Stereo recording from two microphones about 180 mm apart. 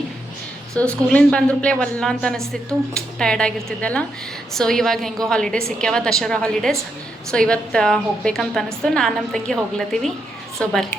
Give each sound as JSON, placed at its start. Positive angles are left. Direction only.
{"t": 0.8, "sound": "a woman's voice", "side_deg": 5}